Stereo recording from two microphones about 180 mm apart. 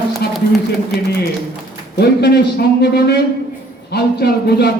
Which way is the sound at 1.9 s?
65° left (ahead or behind).